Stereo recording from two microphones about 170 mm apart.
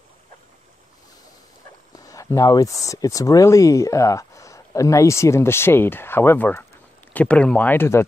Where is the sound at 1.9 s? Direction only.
20° left (ahead or behind).